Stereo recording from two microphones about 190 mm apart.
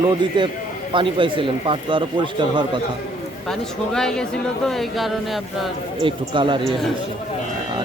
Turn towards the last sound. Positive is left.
turn(degrees=-25)  # may be behind; listen again after turning